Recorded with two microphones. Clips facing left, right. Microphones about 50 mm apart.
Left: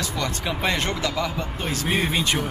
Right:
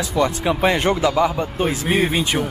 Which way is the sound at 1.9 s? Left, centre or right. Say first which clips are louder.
Right 2 dB; centre.